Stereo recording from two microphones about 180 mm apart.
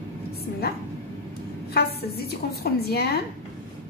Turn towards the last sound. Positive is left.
turn(degrees=60)  # may be behind; listen again after turning